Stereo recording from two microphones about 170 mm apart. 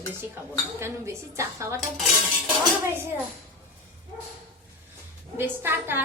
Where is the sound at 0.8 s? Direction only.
15° right (ahead or behind).